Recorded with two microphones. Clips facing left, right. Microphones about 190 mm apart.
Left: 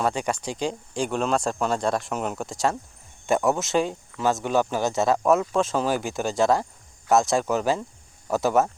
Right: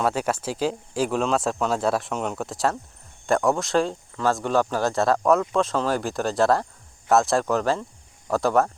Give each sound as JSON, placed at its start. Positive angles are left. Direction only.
{"t": 0.0, "sound": "speech", "side_deg": -5}